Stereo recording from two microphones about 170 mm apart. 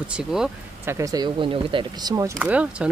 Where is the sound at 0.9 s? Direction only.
20° right (ahead or behind).